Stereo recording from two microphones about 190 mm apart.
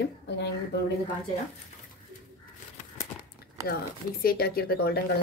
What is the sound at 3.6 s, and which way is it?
Speech, 15° right (ahead or behind).